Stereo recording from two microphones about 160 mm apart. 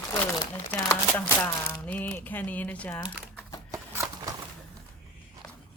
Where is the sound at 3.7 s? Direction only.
20° right (ahead or behind).